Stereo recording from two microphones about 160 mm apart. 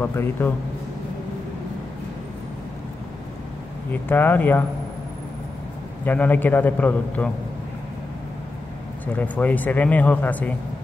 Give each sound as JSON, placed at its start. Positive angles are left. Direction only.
{"t": 0.0, "sound": "speech", "side_deg": 15}
{"t": 3.9, "sound": "speech", "side_deg": 10}
{"t": 6.0, "sound": "speech", "side_deg": 10}
{"t": 9.0, "sound": "speech", "side_deg": 10}